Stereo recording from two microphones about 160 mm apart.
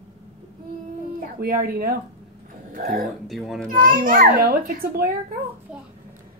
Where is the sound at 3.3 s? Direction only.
Centre (ahead or behind).